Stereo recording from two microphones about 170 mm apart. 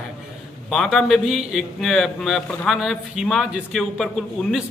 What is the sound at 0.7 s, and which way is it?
A man's voice, centre (ahead or behind).